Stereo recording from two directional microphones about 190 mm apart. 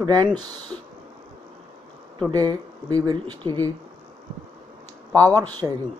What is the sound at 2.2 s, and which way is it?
Speech, 20° right (ahead or behind).